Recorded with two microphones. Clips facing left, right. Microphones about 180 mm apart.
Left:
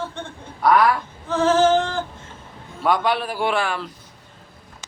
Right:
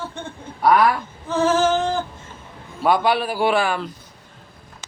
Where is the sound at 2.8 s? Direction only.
5° right (ahead or behind).